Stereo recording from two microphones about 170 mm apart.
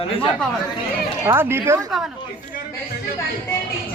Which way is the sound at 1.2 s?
15° right (ahead or behind).